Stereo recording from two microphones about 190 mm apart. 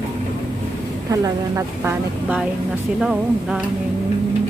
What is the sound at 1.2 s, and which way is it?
A woman's voice, 15° right (ahead or behind).